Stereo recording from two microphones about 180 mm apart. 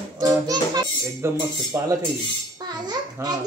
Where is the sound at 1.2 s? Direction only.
15° right (ahead or behind).